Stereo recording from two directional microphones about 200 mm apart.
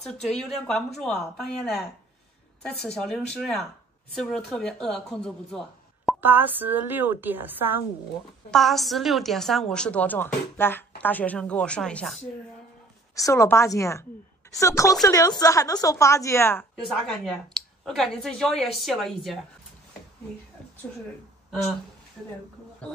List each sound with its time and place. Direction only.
0.1 s speech: centre (ahead or behind)
6.0 s a woman's voice: 10° right (ahead or behind)
8.5 s speech: centre (ahead or behind)
13.1 s a woman's voice: 15° left (ahead or behind)
16.8 s speech: centre (ahead or behind)
22.2 s speech: centre (ahead or behind)